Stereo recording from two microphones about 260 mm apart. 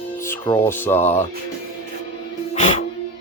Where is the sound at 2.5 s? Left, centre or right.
Left.